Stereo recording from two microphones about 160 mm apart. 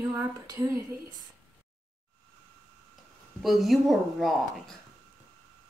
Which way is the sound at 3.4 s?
Centre (ahead or behind).